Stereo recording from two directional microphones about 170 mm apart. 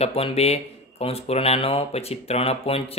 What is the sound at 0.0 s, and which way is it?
Speech, 35° left (ahead or behind).